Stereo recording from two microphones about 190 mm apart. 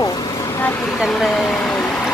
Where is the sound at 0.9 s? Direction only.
Centre (ahead or behind).